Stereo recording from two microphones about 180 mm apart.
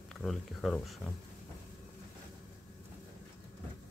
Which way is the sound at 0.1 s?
Centre (ahead or behind).